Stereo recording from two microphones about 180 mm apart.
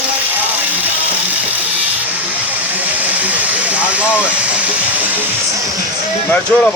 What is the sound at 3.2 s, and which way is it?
Vehicle, 10° right (ahead or behind).